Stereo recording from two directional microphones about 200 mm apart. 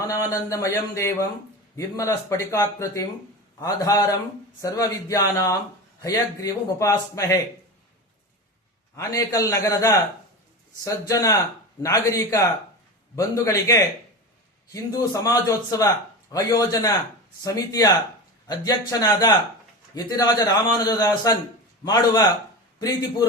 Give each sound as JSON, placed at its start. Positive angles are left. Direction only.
{"t": 0.0, "sound": "a man's voice", "side_deg": 15}
{"t": 9.1, "sound": "a man's voice", "side_deg": 15}